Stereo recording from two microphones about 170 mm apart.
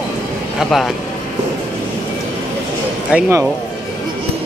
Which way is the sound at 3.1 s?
15° right (ahead or behind).